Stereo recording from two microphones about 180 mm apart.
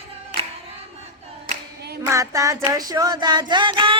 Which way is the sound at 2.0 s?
15° right (ahead or behind).